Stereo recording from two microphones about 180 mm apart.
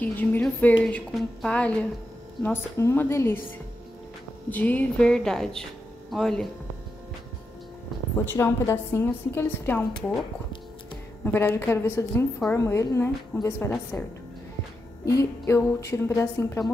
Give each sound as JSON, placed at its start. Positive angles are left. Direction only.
{"t": 0.0, "sound": "a woman's voice", "side_deg": 10}
{"t": 4.5, "sound": "speech", "side_deg": 10}
{"t": 8.3, "sound": "a woman's voice", "side_deg": 15}
{"t": 11.3, "sound": "a woman's voice", "side_deg": 15}
{"t": 15.0, "sound": "a woman's voice", "side_deg": 15}